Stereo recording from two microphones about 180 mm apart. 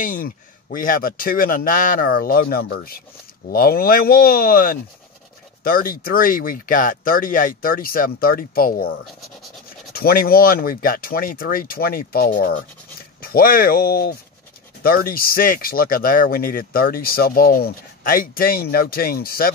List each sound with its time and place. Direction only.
0.0 s speech: 50° left (ahead or behind)
9.9 s speech: 55° left (ahead or behind)